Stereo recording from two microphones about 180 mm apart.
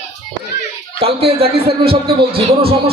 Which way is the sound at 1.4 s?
60° right (ahead or behind).